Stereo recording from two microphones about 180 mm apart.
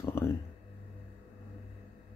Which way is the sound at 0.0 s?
15° left (ahead or behind).